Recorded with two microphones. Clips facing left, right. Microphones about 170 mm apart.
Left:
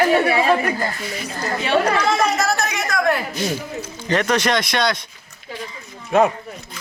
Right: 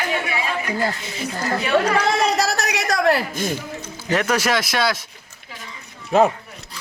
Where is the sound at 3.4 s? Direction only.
50° right (ahead or behind).